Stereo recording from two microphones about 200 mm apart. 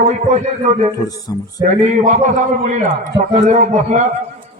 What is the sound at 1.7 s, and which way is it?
A man's voice, 35° right (ahead or behind).